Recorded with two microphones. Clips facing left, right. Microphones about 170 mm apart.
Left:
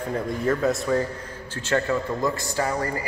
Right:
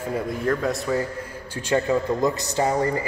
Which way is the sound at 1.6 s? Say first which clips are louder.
Right 2 dB; 15° right (ahead or behind).